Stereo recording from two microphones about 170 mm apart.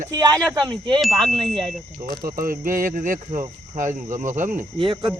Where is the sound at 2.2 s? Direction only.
55° right (ahead or behind).